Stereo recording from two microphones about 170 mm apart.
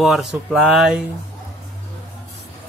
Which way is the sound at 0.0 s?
Centre (ahead or behind).